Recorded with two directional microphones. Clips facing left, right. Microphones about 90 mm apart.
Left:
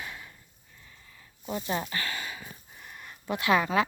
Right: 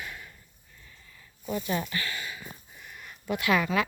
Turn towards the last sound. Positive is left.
turn(degrees=30)  # may be behind; listen again after turning